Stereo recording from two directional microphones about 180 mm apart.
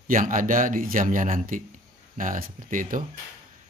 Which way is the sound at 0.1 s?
50° right (ahead or behind).